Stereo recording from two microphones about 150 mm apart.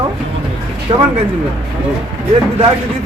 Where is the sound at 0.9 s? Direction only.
30° right (ahead or behind).